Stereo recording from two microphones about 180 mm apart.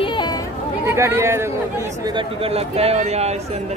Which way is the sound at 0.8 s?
15° right (ahead or behind).